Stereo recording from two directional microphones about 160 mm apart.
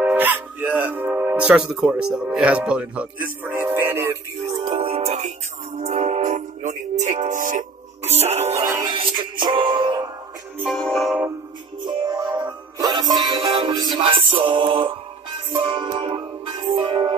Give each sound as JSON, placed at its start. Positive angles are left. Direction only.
{"t": 0.0, "sound": "a man's voice", "side_deg": -10}
{"t": 4.6, "sound": "music", "side_deg": -40}
{"t": 8.1, "sound": "music", "side_deg": -40}
{"t": 8.6, "sound": "music", "side_deg": -20}
{"t": 8.9, "sound": "music", "side_deg": -30}
{"t": 10.6, "sound": "music", "side_deg": 0}
{"t": 11.8, "sound": "music", "side_deg": -30}